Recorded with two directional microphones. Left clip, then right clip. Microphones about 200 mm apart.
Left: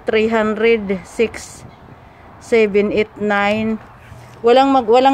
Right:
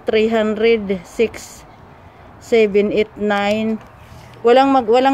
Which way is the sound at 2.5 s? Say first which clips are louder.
Even; centre (ahead or behind).